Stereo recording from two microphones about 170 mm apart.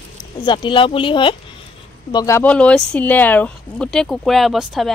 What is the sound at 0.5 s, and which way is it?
Speech, 30° left (ahead or behind).